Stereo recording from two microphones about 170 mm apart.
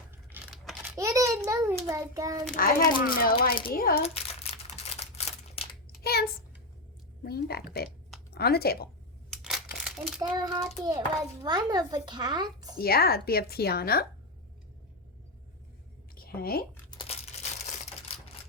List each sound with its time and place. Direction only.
0.5 s a sound: centre (ahead or behind)
0.9 s a sound: 15° right (ahead or behind)
1.5 s a child's voice: 15° right (ahead or behind)
2.6 s a woman's voice: 60° left (ahead or behind)
4.0 s a sound: 35° left (ahead or behind)
6.0 s a sound: 65° left (ahead or behind)
7.3 s speech: 70° left (ahead or behind)
9.3 s crumpling: centre (ahead or behind)
10.2 s speech: 25° right (ahead or behind)
12.8 s a woman's voice: 65° left (ahead or behind)
16.1 s speech: 60° left (ahead or behind)
17.0 s crumpling: 40° left (ahead or behind)